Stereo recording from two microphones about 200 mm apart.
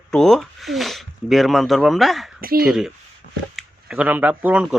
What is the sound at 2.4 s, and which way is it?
Speech, 50° right (ahead or behind).